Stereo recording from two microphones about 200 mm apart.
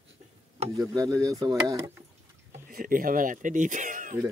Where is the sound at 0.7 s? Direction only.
15° right (ahead or behind).